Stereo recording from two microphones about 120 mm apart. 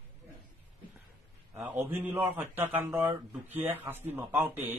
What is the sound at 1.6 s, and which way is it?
A man's voice, 15° right (ahead or behind).